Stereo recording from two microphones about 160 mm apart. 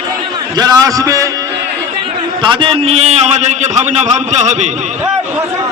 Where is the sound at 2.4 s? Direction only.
30° right (ahead or behind).